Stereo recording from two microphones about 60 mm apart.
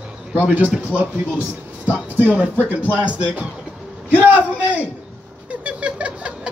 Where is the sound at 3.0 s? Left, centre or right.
Centre.